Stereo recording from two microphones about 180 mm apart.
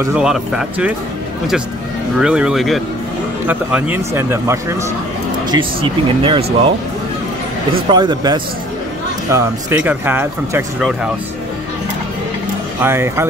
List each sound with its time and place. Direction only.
0.0 s speech: 5° right (ahead or behind)
2.1 s speech: 5° right (ahead or behind)
5.5 s speech: 30° right (ahead or behind)
7.7 s speech: 25° right (ahead or behind)
9.3 s speech: 10° right (ahead or behind)
12.8 s speech: 15° right (ahead or behind)